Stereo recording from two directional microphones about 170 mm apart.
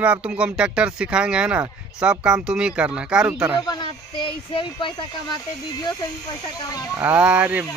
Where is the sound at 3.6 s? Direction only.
25° left (ahead or behind).